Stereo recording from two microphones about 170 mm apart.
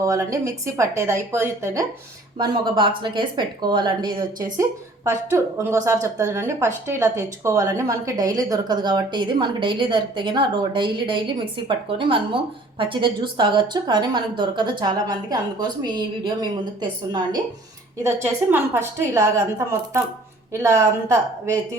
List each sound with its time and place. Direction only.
0.0 s a woman's voice: 20° right (ahead or behind)
2.4 s speech: 25° right (ahead or behind)
18.0 s a woman's voice: 15° right (ahead or behind)